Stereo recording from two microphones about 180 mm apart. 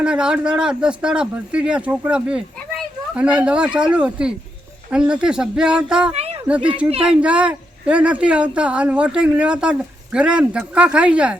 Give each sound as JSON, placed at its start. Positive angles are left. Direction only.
{"t": 0.0, "sound": "speech", "side_deg": -5}
{"t": 6.1, "sound": "a sound", "side_deg": -35}
{"t": 6.5, "sound": "speech", "side_deg": -5}